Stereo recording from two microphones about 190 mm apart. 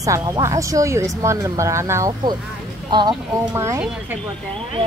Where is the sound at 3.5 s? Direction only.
15° right (ahead or behind).